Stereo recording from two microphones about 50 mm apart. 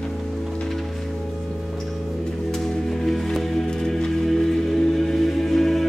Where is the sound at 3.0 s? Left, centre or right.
Centre.